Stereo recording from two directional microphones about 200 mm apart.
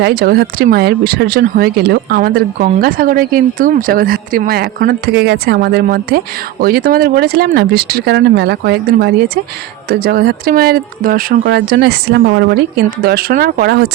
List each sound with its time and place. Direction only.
0.0 s speech: 50° right (ahead or behind)